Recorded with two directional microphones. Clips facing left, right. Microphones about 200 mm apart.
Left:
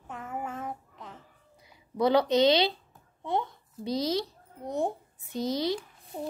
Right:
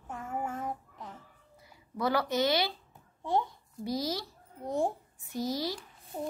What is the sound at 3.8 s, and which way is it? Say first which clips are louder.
A child's voice: left 4 dB; 20° left (ahead or behind).